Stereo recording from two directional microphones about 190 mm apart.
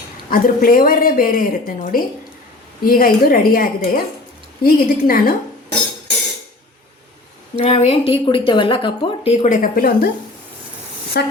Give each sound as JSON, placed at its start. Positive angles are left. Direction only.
{"t": 0.3, "sound": "speech", "side_deg": 50}
{"t": 7.6, "sound": "a woman's voice", "side_deg": 30}
{"t": 11.1, "sound": "speech", "side_deg": 55}